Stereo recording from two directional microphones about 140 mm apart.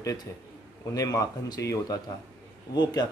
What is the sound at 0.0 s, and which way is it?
A man's voice, 25° left (ahead or behind).